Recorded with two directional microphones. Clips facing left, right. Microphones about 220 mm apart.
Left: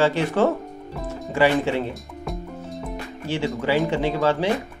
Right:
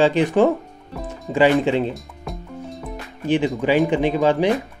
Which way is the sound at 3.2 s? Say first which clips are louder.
Right 5 dB; 15° right (ahead or behind).